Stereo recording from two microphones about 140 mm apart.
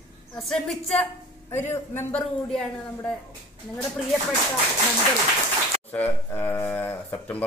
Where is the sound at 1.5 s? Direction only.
15° left (ahead or behind).